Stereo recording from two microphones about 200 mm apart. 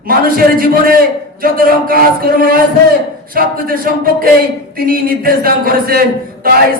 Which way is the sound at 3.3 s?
45° right (ahead or behind).